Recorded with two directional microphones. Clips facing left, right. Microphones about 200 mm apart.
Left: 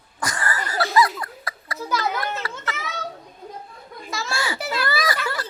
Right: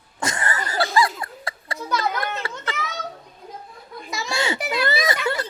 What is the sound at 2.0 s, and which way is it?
Children playing, 25° right (ahead or behind).